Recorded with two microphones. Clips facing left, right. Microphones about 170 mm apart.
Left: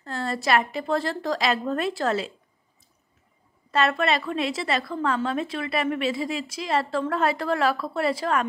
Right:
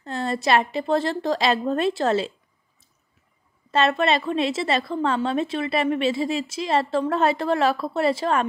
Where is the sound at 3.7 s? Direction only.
25° right (ahead or behind).